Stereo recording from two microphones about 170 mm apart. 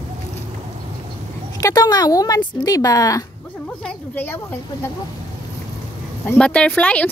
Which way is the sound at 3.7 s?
10° left (ahead or behind).